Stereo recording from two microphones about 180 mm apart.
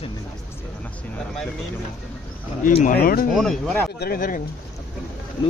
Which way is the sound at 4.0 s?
55° left (ahead or behind).